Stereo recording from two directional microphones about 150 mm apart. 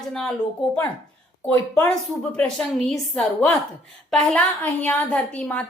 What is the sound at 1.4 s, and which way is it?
A woman's voice, 10° left (ahead or behind).